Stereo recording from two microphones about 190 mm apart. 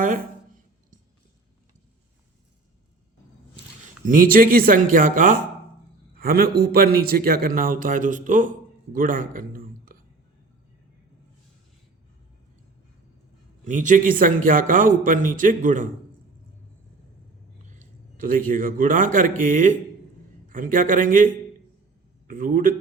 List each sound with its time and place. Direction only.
0.0 s a sound: 45° right (ahead or behind)
4.0 s a man's voice: 45° right (ahead or behind)
13.7 s a man's voice: 40° right (ahead or behind)
17.6 s a man's voice: 40° right (ahead or behind)
22.3 s speech: 45° right (ahead or behind)